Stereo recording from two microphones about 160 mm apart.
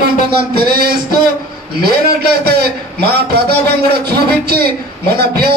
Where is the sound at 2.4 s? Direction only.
80° right.